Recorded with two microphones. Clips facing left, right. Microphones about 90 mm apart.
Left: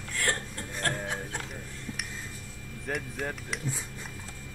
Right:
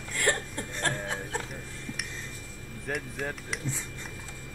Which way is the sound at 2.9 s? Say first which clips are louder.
Even; centre (ahead or behind).